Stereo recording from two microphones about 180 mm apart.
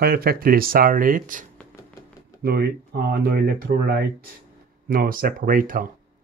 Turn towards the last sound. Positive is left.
turn(degrees=-50)  # may be behind; listen again after turning